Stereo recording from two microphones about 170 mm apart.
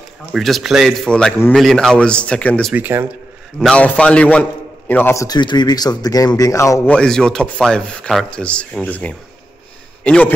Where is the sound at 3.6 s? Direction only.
5° left (ahead or behind).